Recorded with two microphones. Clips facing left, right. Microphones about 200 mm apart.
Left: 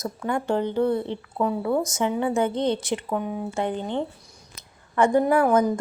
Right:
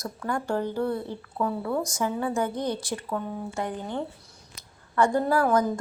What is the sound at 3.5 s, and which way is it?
Speech, 25° left (ahead or behind).